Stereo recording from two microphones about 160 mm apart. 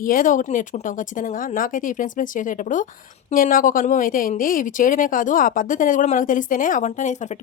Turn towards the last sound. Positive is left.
turn(degrees=50)  # may be behind; listen again after turning